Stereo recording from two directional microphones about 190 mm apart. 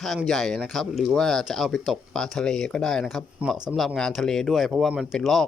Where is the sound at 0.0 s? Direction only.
Centre (ahead or behind).